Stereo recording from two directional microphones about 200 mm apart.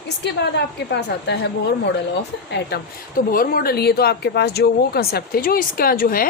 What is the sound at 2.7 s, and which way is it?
Speech, 55° left (ahead or behind).